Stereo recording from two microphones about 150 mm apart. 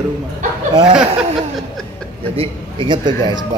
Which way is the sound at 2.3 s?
35° right (ahead or behind).